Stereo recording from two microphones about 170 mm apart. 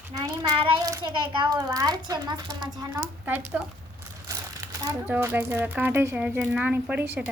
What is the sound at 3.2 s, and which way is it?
Speech, 10° right (ahead or behind).